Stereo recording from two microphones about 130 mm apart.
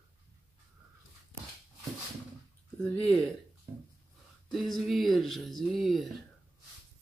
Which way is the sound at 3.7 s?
30° right (ahead or behind).